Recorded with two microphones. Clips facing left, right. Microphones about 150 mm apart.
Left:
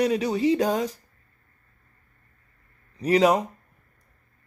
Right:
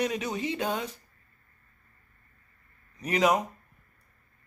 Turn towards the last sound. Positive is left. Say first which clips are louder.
# left 5 dB
turn(degrees=35)  # may be behind; listen again after turning